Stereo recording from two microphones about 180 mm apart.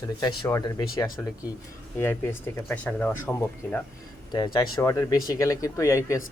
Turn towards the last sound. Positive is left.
turn(degrees=15)  # may be behind; listen again after turning